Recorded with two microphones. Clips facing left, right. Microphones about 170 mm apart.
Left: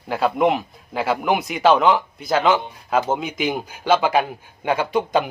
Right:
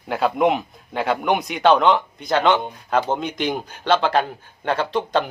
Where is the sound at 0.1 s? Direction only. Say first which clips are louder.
Even; centre (ahead or behind).